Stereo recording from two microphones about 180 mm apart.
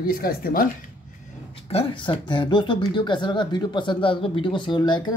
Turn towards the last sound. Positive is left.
turn(degrees=25)  # may be behind; listen again after turning